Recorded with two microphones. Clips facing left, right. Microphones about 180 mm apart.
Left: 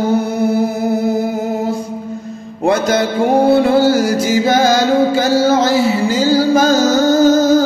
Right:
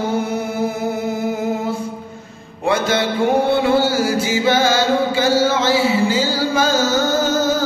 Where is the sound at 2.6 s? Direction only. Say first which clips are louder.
Left 4 dB; 40° left (ahead or behind).